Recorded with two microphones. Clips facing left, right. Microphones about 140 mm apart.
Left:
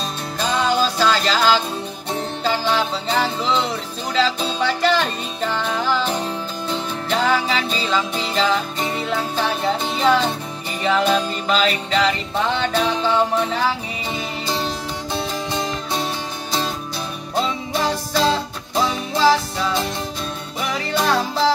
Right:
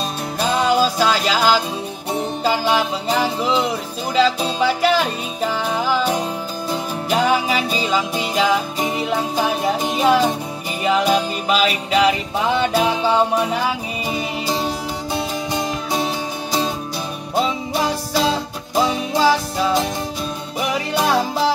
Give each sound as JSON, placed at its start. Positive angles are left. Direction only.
{"t": 0.4, "sound": "music", "side_deg": -10}
{"t": 17.4, "sound": "music", "side_deg": -10}